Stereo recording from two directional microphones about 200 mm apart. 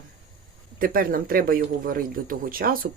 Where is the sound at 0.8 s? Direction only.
45° right (ahead or behind).